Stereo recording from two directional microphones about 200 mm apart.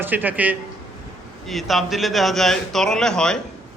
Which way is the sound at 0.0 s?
10° right (ahead or behind).